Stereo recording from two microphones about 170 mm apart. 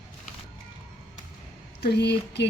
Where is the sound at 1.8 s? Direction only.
75° left (ahead or behind).